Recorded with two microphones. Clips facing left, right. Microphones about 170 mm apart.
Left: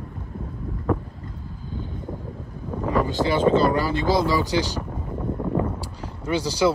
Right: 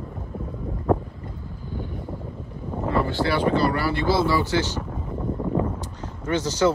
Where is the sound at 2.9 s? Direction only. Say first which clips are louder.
Left 1 dB; 15° left (ahead or behind).